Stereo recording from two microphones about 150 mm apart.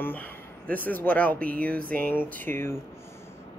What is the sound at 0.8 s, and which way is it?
Speech, 10° left (ahead or behind).